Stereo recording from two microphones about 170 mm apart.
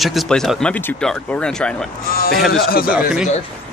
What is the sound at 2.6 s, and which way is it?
Speech, 60° left (ahead or behind).